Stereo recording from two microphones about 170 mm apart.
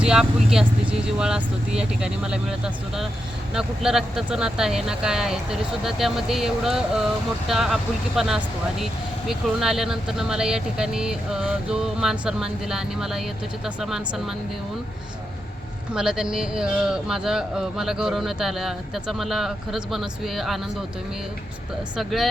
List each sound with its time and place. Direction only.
0.0 s speech: 5° right (ahead or behind)
16.0 s speech: 5° right (ahead or behind)
21.9 s speech: centre (ahead or behind)